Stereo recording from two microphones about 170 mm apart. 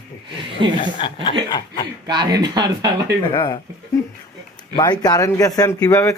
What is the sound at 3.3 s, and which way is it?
Speech, 25° left (ahead or behind).